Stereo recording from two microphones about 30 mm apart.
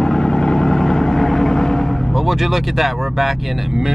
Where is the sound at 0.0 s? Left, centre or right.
Left.